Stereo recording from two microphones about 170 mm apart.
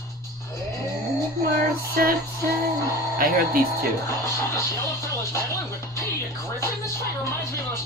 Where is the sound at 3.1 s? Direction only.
60° right (ahead or behind).